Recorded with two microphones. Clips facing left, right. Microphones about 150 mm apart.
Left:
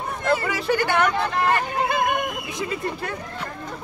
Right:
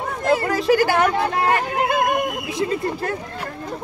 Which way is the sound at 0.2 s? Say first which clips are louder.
Right 3 dB; 40° right (ahead or behind).